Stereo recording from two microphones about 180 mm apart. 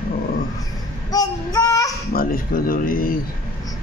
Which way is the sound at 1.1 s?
20° left (ahead or behind).